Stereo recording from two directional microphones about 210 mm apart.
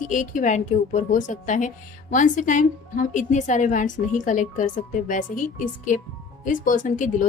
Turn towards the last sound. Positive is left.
turn(degrees=40)  # may be behind; listen again after turning